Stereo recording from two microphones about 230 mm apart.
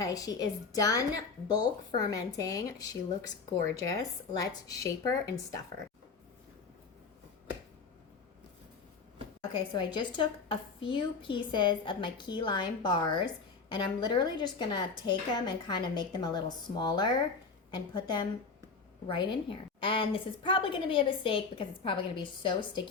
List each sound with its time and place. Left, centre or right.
0.0 s a woman's voice: centre
9.5 s a woman's voice: centre
19.0 s a woman's voice: left